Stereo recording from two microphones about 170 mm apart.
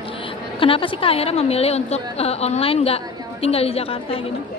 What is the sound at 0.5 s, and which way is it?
A woman's voice, 30° left (ahead or behind).